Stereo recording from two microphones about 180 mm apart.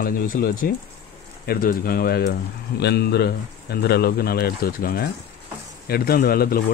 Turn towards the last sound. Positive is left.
turn(degrees=55)  # may be behind; listen again after turning